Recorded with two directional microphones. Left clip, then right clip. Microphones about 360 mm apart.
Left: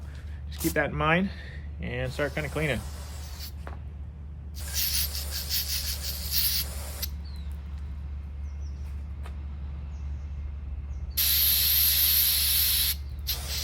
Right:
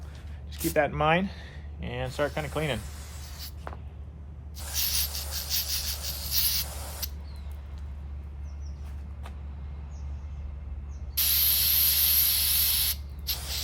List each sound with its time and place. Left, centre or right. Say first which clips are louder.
0.7 s speech: right 1 dB; centre
2.8 s a sound: left 1 dB; centre
11.2 s spray: left 1 dB; centre